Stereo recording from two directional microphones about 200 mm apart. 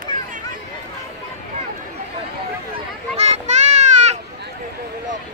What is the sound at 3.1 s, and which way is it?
Children playing, 35° right (ahead or behind).